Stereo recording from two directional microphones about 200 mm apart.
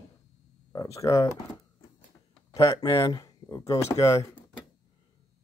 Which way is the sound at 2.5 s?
15° left (ahead or behind).